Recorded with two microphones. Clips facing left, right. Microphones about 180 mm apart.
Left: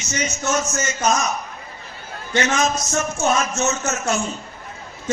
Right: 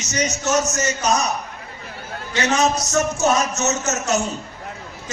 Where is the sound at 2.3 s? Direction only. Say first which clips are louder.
Right 1 dB; 35° right (ahead or behind).